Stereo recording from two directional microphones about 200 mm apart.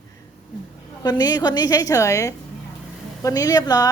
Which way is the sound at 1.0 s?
20° left (ahead or behind).